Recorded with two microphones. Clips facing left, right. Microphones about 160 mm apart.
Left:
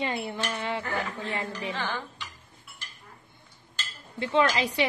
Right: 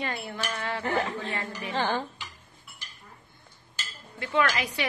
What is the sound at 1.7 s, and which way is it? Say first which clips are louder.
Dishes: right 9 dB; 30° right (ahead or behind).